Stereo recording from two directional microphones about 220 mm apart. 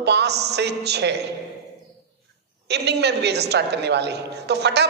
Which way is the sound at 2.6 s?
50° right (ahead or behind).